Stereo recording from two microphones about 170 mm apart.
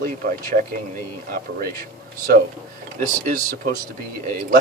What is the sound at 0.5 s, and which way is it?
Speech, 65° right (ahead or behind).